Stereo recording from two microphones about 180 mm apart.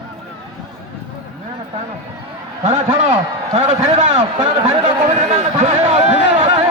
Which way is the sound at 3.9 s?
35° right (ahead or behind).